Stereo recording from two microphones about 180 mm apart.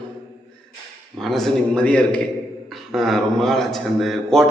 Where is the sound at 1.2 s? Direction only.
Centre (ahead or behind).